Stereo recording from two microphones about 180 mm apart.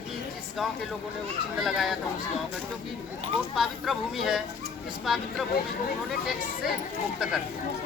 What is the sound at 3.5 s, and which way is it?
Speech, centre (ahead or behind).